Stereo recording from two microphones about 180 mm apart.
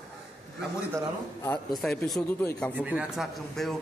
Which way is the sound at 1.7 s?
Centre (ahead or behind).